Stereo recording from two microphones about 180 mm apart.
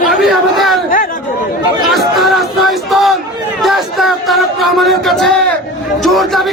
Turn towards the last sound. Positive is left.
turn(degrees=0)  # may be behind; listen again after turning